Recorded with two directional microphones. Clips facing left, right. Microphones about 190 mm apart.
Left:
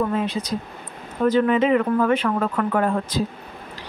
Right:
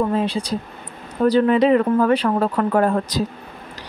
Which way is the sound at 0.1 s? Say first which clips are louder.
Right 3 dB; 30° right (ahead or behind).